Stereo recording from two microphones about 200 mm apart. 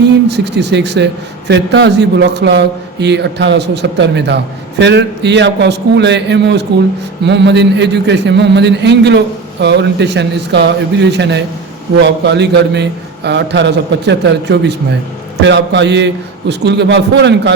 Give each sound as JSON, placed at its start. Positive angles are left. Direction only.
{"t": 0.3, "sound": "a man's voice", "side_deg": -60}